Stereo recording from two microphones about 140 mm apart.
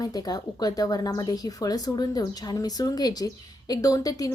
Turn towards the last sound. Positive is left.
turn(degrees=25)  # may be behind; listen again after turning